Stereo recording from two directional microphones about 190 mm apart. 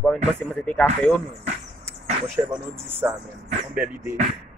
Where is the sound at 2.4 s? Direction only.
15° right (ahead or behind).